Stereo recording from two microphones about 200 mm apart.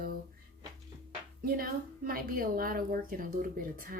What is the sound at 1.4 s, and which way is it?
Speech, 45° right (ahead or behind).